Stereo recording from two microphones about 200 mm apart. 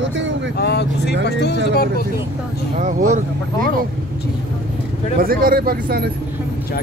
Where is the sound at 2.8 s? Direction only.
40° right (ahead or behind).